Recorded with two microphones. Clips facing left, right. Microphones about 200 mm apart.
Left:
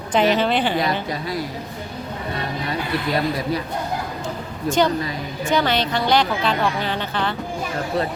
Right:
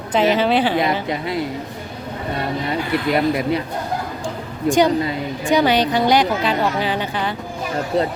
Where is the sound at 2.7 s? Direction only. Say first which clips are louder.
Right 3 dB; 25° right (ahead or behind).